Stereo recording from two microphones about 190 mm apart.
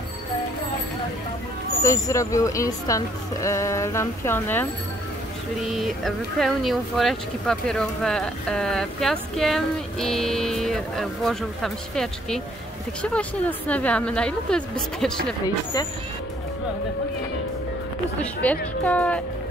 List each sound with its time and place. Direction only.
1.8 s speech: 15° left (ahead or behind)
5.7 s speech: centre (ahead or behind)
15.4 s speech: 20° left (ahead or behind)
18.2 s speech: 10° left (ahead or behind)